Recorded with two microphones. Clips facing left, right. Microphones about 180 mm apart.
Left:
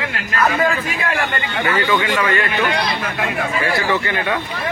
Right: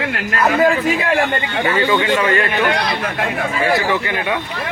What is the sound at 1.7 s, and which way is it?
Speech, 25° right (ahead or behind).